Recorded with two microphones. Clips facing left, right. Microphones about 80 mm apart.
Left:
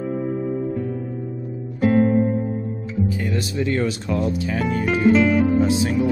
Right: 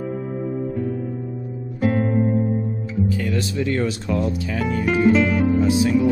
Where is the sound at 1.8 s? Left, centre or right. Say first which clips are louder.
Left 4 dB; centre.